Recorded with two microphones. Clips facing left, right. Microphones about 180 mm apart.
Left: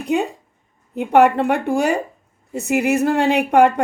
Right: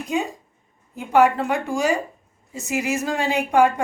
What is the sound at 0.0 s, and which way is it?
Speech, 65° left (ahead or behind).